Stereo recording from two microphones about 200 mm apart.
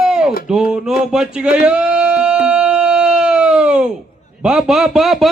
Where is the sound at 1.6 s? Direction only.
5° right (ahead or behind).